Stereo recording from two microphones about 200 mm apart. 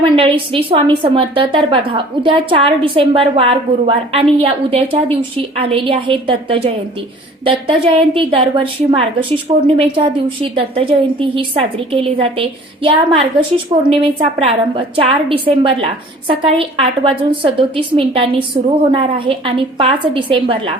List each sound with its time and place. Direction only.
0.0 s a woman's voice: 25° right (ahead or behind)
13.9 s a woman's voice: 30° right (ahead or behind)